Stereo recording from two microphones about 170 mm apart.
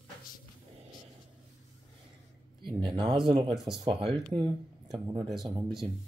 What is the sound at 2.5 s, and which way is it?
Speech, 25° right (ahead or behind).